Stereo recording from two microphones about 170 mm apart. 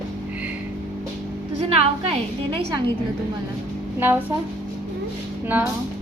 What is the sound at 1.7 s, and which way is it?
Speech, 35° right (ahead or behind).